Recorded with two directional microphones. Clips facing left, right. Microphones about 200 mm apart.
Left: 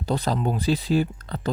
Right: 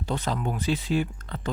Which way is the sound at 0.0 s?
35° left (ahead or behind).